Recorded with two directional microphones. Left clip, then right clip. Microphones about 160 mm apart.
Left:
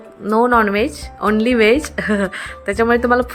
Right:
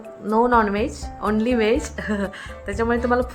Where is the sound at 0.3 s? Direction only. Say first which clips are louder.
Left 4 dB; 20° left (ahead or behind).